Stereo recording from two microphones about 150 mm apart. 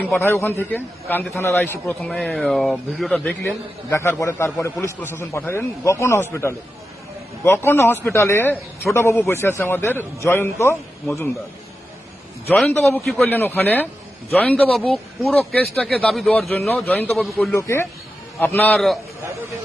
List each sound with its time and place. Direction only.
0.0 s a man's voice: 15° left (ahead or behind)
1.1 s speech: 5° left (ahead or behind)
1.4 s a man's voice: 15° left (ahead or behind)
1.9 s speech: 5° left (ahead or behind)
3.8 s a man's voice: 20° left (ahead or behind)
12.5 s a man's voice: centre (ahead or behind)
16.6 s a man's voice: 15° left (ahead or behind)
17.5 s a man's voice: 20° left (ahead or behind)